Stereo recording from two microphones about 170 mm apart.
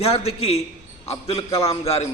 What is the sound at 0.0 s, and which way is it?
Speech, 35° left (ahead or behind).